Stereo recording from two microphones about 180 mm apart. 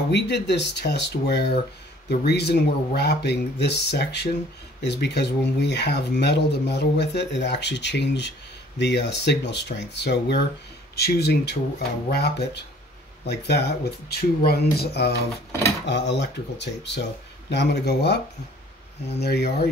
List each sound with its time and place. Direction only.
0.1 s speech: 70° left (ahead or behind)